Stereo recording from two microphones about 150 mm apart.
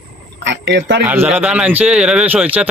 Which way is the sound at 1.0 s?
10° right (ahead or behind).